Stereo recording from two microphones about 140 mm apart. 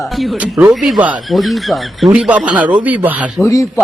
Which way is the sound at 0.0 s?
Centre (ahead or behind).